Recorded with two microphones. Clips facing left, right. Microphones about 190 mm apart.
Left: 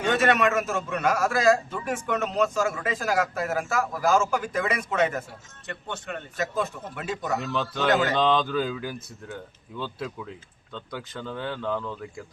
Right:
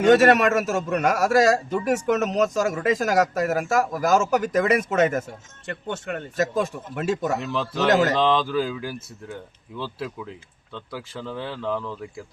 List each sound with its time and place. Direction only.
0.1 s a man's voice: 40° right (ahead or behind)
7.4 s speech: centre (ahead or behind)